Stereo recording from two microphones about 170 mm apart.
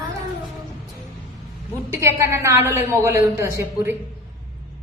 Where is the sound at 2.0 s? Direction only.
15° right (ahead or behind).